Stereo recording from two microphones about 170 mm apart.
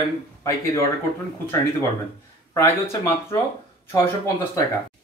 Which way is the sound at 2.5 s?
15° left (ahead or behind).